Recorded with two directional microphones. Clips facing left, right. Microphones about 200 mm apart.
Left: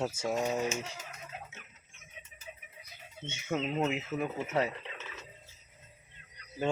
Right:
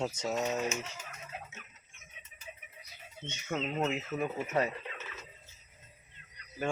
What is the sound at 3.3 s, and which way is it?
Speech, 15° left (ahead or behind).